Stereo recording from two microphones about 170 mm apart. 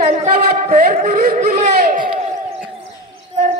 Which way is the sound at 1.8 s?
60° right (ahead or behind).